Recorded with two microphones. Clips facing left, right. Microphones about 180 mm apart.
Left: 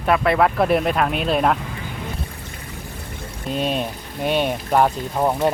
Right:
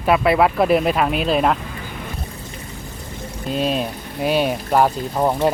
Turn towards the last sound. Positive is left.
turn(degrees=0)  # may be behind; listen again after turning